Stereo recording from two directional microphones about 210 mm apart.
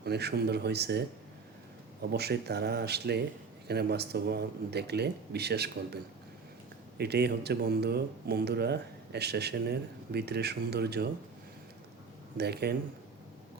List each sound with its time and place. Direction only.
0.0 s speech: 50° right (ahead or behind)
7.0 s speech: 50° right (ahead or behind)
12.4 s speech: 50° right (ahead or behind)